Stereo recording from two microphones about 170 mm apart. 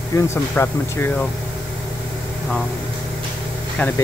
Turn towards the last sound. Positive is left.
turn(degrees=10)  # may be behind; listen again after turning